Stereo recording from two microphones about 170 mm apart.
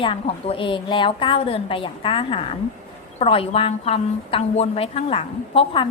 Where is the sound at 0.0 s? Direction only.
35° left (ahead or behind).